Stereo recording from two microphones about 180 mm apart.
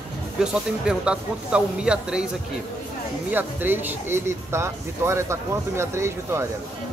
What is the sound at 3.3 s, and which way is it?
Speech, 10° right (ahead or behind).